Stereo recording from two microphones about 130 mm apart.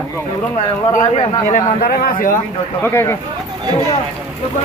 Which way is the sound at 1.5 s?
80° left.